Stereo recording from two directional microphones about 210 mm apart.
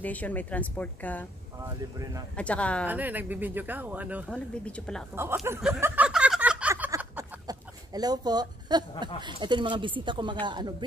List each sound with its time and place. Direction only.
0.0 s a woman's voice: 5° left (ahead or behind)
2.3 s speech: 5° left (ahead or behind)
2.9 s speech: 10° right (ahead or behind)
4.3 s speech: 5° left (ahead or behind)
5.1 s a sound: 10° right (ahead or behind)
9.2 s speech: 20° right (ahead or behind)